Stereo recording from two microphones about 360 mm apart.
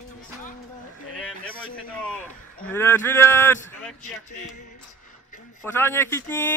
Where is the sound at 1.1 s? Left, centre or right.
Centre.